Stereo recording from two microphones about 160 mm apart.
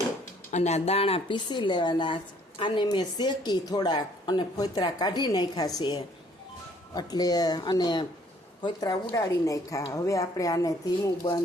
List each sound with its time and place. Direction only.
0.5 s a woman's voice: 45° left (ahead or behind); by 11.3 s 25° left (ahead or behind)